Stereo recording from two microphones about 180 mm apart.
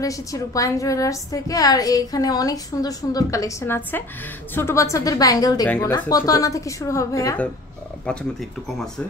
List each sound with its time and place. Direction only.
0.0 s a woman's voice: 20° left (ahead or behind)